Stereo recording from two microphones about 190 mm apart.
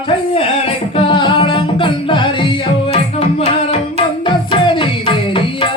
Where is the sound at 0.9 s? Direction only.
25° left (ahead or behind).